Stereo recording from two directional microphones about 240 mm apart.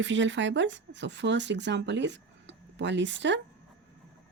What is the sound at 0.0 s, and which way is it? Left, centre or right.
Speech, right.